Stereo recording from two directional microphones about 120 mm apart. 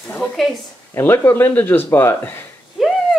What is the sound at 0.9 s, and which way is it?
Speech, 20° left (ahead or behind).